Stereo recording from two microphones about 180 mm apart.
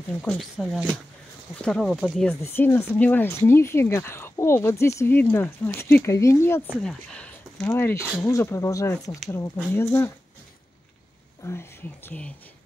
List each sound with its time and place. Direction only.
0.2 s speech: 5° left (ahead or behind)
6.7 s speech: 5° left (ahead or behind)
11.4 s speech: 15° left (ahead or behind)